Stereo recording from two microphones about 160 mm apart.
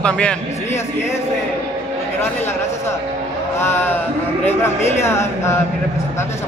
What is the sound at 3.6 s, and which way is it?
A man's voice, 15° left (ahead or behind).